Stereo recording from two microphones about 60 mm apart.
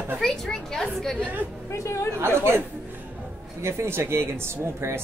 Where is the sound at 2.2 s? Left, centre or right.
Right.